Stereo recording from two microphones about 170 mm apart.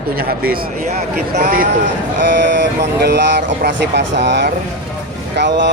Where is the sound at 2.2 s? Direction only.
90° right.